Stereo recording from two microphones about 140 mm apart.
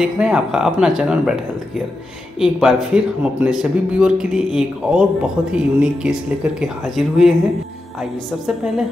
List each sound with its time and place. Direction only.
0.0 s speech: 5° right (ahead or behind)
2.4 s speech: 5° right (ahead or behind)